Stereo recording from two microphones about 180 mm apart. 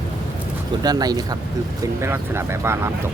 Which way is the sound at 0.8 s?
20° right (ahead or behind).